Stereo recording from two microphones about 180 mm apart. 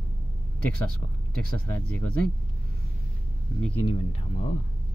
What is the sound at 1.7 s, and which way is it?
Speech, 10° left (ahead or behind).